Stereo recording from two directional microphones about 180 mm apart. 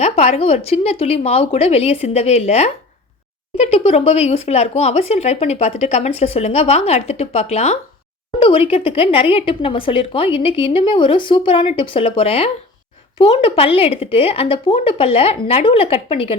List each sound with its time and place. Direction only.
0.0 s speech: 35° left (ahead or behind)